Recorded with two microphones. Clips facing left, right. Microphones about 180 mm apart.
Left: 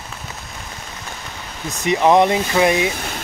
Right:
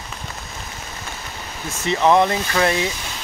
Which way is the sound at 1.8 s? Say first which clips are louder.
Left 2 dB; 15° left (ahead or behind).